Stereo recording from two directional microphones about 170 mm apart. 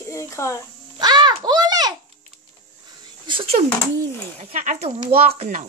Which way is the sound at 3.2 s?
30° right (ahead or behind).